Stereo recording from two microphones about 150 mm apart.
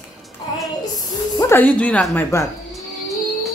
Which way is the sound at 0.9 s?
25° left (ahead or behind).